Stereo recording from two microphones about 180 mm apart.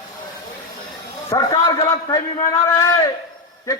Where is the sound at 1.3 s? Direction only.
20° left (ahead or behind).